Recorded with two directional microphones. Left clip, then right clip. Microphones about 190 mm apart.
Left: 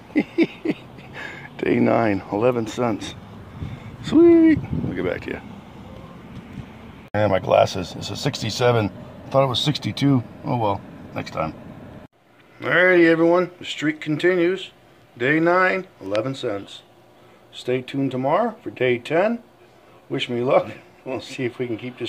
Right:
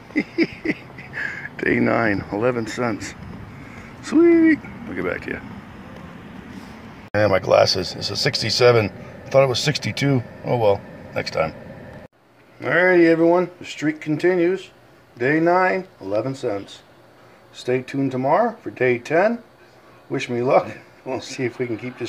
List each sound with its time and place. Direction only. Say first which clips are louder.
0.1 s a sound: left 1 dB; 20° left (ahead or behind)
1.9 s speech: even; 10° left (ahead or behind)
4.1 s speech: left 1 dB; 10° left (ahead or behind)
7.1 s speech: right 2 dB; 5° left (ahead or behind)
12.5 s speech: even; centre (ahead or behind)
17.9 s a man's voice: right 2 dB; 5° left (ahead or behind)